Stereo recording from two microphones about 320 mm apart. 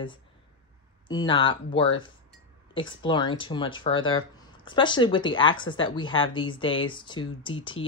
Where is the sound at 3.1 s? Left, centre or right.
Centre.